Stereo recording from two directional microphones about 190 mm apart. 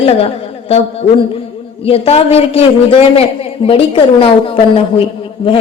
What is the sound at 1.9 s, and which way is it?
Speech, 30° left (ahead or behind).